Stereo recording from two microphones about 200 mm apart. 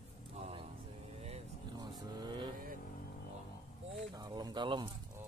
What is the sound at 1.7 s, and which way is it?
Vehicle, 20° right (ahead or behind).